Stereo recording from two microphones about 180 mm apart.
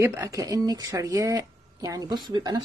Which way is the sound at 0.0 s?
20° right (ahead or behind).